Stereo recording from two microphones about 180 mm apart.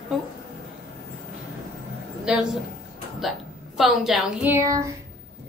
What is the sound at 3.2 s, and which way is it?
A woman's voice, centre (ahead or behind).